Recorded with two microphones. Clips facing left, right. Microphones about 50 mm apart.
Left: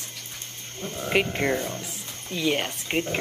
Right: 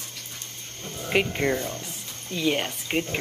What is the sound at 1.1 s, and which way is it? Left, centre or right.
Speech, centre.